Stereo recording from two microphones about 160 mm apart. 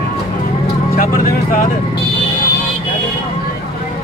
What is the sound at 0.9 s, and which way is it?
Vehicle, 60° left (ahead or behind).